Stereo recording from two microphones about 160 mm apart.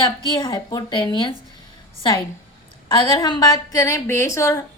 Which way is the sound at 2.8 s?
25° left (ahead or behind).